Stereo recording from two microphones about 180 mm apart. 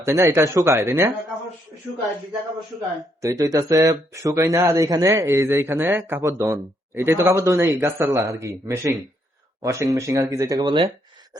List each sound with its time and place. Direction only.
0.0 s speech: 15° right (ahead or behind)
3.2 s speech: 20° right (ahead or behind)